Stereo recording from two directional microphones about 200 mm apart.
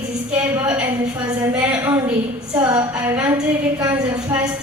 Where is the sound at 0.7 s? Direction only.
5° right (ahead or behind).